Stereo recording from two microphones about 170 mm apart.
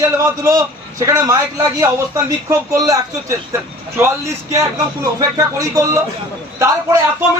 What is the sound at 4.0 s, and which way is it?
A man's voice, 15° right (ahead or behind).